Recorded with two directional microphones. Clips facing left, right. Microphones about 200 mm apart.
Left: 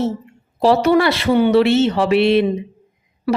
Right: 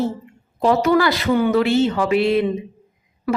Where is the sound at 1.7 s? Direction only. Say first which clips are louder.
Left 2 dB; 70° left (ahead or behind).